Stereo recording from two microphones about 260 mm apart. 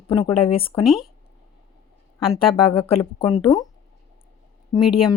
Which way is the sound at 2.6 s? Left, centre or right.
Left.